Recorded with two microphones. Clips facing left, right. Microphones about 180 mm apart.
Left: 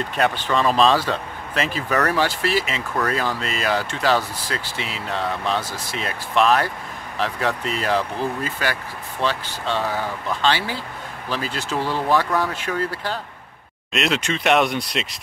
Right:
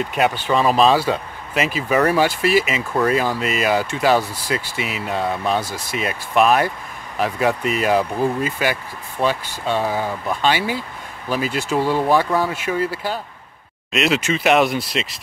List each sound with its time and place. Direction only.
0.1 s speech: 10° right (ahead or behind)